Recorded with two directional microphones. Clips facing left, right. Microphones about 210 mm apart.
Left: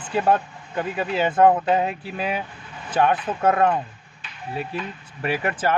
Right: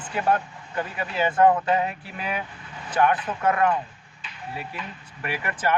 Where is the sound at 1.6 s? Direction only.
30° left (ahead or behind).